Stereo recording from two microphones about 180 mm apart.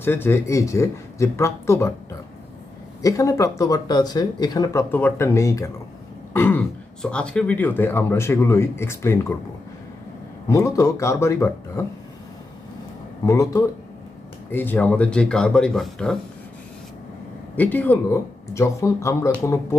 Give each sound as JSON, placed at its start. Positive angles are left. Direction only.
{"t": 0.0, "sound": "speech", "side_deg": 10}
{"t": 3.0, "sound": "speech", "side_deg": 20}
{"t": 10.5, "sound": "speech", "side_deg": 15}
{"t": 13.2, "sound": "speech", "side_deg": 15}
{"t": 17.6, "sound": "speech", "side_deg": 10}